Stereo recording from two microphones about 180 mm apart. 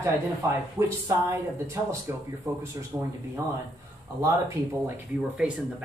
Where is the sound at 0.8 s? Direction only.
15° right (ahead or behind).